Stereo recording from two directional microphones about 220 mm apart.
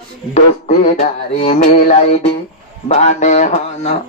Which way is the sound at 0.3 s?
30° left (ahead or behind).